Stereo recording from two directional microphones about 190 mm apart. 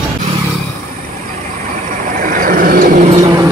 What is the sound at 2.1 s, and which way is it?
Vehicle, 45° right (ahead or behind).